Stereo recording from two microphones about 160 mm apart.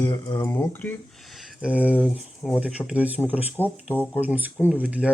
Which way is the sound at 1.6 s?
10° right (ahead or behind).